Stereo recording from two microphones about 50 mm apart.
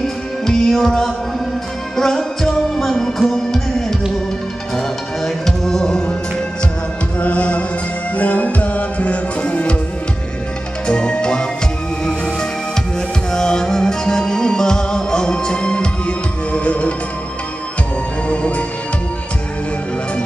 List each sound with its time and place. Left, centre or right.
0.0 s music: centre
7.2 s music: left
10.9 s music: centre
13.3 s music: centre